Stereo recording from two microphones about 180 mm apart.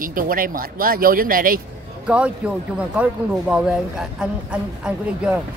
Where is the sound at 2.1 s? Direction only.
5° right (ahead or behind).